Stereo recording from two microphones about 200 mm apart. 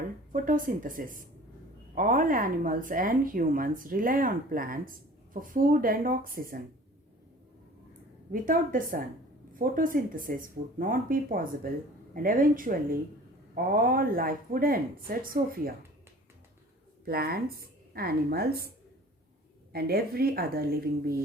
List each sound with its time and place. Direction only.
0.3 s a woman's voice: 40° right (ahead or behind)
8.3 s speech: 45° right (ahead or behind)
17.1 s speech: 50° right (ahead or behind)
19.7 s speech: 50° right (ahead or behind)